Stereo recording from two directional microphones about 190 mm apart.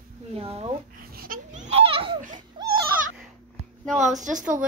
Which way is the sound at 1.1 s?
50° right (ahead or behind).